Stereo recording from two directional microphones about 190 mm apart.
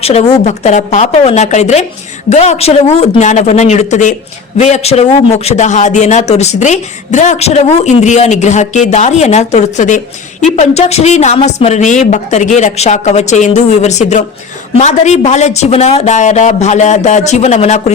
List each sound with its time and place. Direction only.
0.0 s a man's voice: 30° left (ahead or behind)